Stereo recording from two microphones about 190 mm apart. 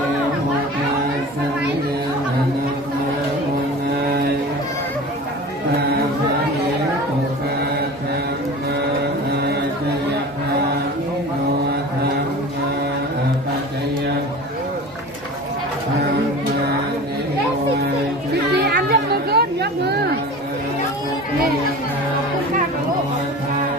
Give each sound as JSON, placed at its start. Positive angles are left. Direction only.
{"t": 18.5, "sound": "chatter", "side_deg": -60}